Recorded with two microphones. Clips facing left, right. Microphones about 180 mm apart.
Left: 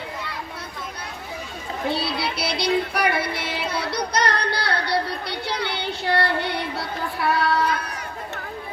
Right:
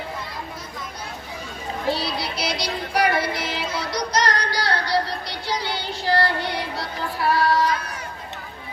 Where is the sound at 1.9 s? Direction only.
60° left (ahead or behind).